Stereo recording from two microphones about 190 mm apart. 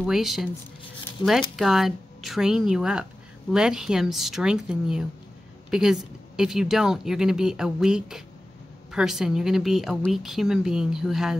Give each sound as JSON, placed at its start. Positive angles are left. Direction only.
{"t": 0.0, "sound": "speech", "side_deg": 0}
{"t": 1.2, "sound": "speech", "side_deg": 20}
{"t": 1.6, "sound": "speech", "side_deg": 0}